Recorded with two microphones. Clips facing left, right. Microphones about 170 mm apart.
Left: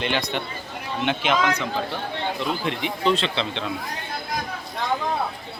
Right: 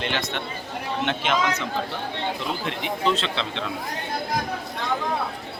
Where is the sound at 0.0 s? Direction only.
Centre (ahead or behind).